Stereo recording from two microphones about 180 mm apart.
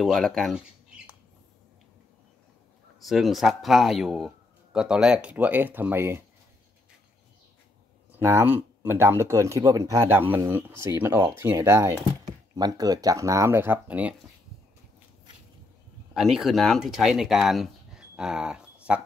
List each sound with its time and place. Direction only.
0.0 s speech: centre (ahead or behind)
3.0 s speech: centre (ahead or behind)
8.2 s speech: 10° right (ahead or behind)
16.1 s speech: centre (ahead or behind)